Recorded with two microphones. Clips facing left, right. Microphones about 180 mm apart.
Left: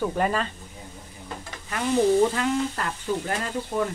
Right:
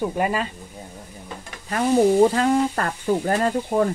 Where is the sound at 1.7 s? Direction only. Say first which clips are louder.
Right 4 dB; 40° right (ahead or behind).